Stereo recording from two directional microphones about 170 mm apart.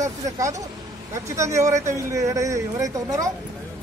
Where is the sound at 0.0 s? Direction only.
20° right (ahead or behind).